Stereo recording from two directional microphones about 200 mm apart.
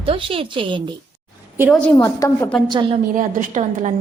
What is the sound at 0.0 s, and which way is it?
Speech, 25° right (ahead or behind).